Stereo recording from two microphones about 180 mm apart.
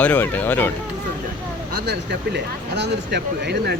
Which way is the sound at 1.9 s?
75° right (ahead or behind).